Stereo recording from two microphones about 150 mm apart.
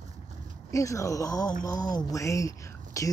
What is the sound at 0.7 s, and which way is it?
Speech, 20° left (ahead or behind).